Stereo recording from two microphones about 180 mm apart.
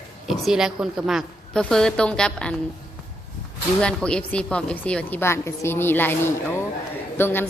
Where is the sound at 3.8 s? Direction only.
5° left (ahead or behind).